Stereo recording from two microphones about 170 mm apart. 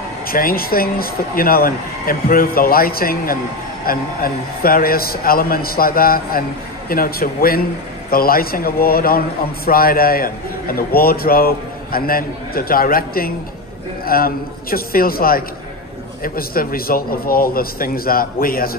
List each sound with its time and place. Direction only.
0.3 s a man's voice: 60° left (ahead or behind)